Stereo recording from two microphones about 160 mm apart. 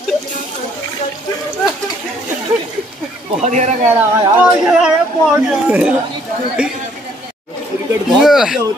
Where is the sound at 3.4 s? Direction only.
50° right (ahead or behind).